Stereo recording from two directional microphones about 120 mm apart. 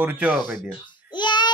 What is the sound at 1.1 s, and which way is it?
Child singing, 40° left (ahead or behind).